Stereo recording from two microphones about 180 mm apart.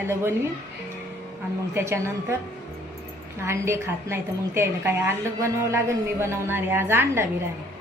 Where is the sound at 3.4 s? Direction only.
15° right (ahead or behind).